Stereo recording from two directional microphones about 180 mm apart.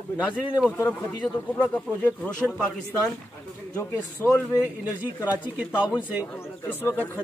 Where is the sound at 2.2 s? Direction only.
Centre (ahead or behind).